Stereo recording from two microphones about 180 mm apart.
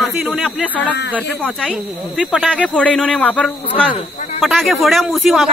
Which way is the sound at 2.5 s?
5° left (ahead or behind).